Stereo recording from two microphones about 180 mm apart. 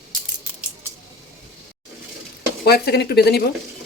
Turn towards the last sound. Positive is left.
turn(degrees=65)  # may be behind; listen again after turning